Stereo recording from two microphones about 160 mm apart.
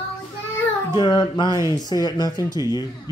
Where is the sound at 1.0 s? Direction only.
25° left (ahead or behind).